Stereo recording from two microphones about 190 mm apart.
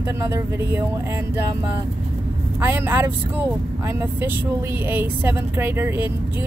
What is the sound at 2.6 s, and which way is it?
Speech, 10° right (ahead or behind).